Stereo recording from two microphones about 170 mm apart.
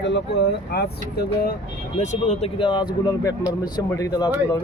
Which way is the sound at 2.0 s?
45° left (ahead or behind).